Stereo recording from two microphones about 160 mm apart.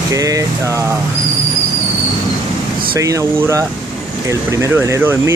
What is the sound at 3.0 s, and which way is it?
Speech, 20° right (ahead or behind).